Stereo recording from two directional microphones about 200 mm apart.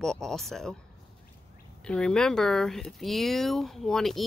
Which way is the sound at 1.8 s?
5° left (ahead or behind).